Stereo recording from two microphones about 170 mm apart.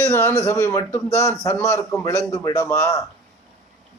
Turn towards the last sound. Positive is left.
turn(degrees=20)  # may be behind; listen again after turning